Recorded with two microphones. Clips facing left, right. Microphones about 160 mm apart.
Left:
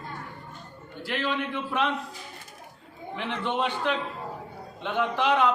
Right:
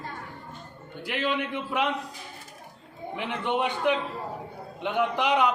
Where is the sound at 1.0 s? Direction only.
15° right (ahead or behind).